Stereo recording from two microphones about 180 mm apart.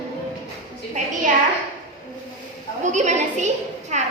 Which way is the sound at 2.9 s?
40° right (ahead or behind).